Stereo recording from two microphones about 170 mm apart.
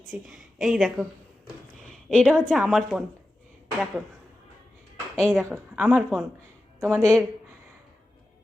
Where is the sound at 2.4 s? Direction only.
5° left (ahead or behind).